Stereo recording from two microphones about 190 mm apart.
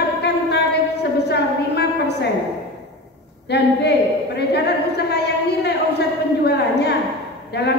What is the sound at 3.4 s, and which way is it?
A woman's voice, 60° left (ahead or behind).